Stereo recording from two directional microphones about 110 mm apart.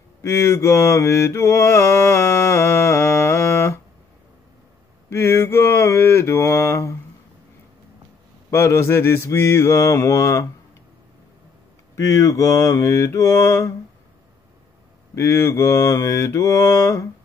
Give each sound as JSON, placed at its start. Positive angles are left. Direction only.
{"t": 0.2, "sound": "mantra", "side_deg": 25}
{"t": 5.1, "sound": "mantra", "side_deg": 25}
{"t": 8.5, "sound": "mantra", "side_deg": 25}
{"t": 11.9, "sound": "mantra", "side_deg": 25}
{"t": 15.1, "sound": "mantra", "side_deg": 25}